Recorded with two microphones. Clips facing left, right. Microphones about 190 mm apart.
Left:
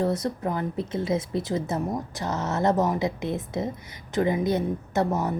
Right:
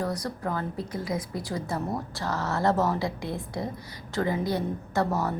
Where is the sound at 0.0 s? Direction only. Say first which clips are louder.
Left 5 dB; 25° left (ahead or behind).